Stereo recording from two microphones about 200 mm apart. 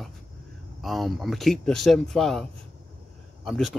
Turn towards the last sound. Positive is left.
turn(degrees=0)  # may be behind; listen again after turning